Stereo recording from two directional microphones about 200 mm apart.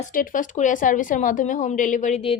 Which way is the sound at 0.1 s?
45° left (ahead or behind).